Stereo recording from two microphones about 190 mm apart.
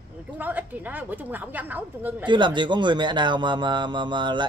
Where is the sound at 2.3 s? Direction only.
25° right (ahead or behind).